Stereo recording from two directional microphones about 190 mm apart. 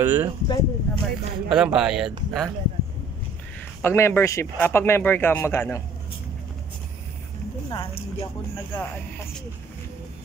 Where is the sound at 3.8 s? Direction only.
10° left (ahead or behind).